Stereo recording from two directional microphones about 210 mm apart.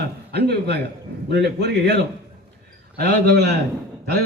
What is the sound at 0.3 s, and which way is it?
A man's voice, 50° right (ahead or behind).